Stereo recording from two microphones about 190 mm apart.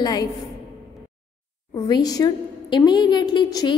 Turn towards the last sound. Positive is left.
turn(degrees=20)  # may be behind; listen again after turning